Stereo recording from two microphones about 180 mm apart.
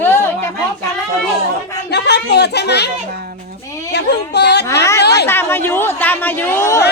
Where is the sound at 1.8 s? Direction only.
70° left (ahead or behind).